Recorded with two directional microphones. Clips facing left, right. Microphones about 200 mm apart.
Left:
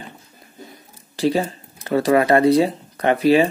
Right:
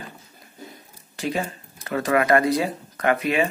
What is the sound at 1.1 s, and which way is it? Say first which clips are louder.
Speech: left 7 dB; 30° left (ahead or behind).